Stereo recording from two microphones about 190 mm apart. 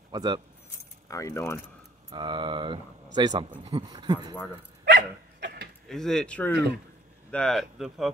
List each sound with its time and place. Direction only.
0.1 s speech: 20° right (ahead or behind)
1.0 s speech: 15° left (ahead or behind)
2.0 s speech: 25° right (ahead or behind)
4.9 s dog: 65° right (ahead or behind)
5.9 s speech: centre (ahead or behind)
6.5 s speech: 60° right (ahead or behind)
7.2 s speech: 5° left (ahead or behind)